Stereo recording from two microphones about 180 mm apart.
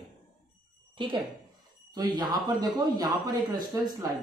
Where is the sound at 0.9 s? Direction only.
25° right (ahead or behind).